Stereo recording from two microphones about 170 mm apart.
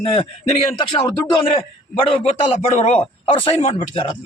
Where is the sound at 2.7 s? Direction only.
40° left (ahead or behind).